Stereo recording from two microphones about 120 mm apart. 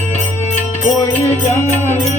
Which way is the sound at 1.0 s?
20° left (ahead or behind).